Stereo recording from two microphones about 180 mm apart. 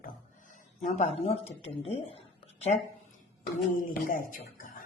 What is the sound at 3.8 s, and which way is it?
Speech, 50° left (ahead or behind).